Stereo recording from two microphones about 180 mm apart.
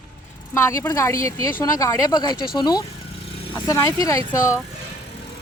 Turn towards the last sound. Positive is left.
turn(degrees=20)  # may be behind; listen again after turning